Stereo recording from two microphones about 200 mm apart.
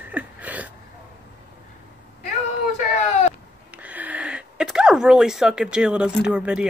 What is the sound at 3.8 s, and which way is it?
Speech, 5° right (ahead or behind).